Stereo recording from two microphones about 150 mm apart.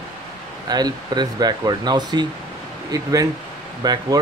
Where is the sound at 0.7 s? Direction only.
25° right (ahead or behind).